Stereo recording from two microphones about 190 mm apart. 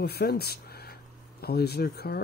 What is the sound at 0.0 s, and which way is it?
Speech, 55° left (ahead or behind).